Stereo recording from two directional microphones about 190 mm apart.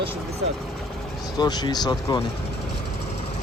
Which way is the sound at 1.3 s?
20° left (ahead or behind).